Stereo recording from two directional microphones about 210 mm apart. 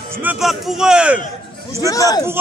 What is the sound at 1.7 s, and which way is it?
Speech, 15° left (ahead or behind).